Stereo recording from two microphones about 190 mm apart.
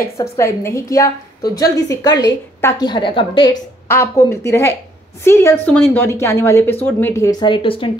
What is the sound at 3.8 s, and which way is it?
A woman's voice, 15° left (ahead or behind).